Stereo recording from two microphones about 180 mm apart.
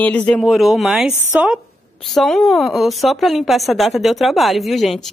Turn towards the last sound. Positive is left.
turn(degrees=0)  # may be behind; listen again after turning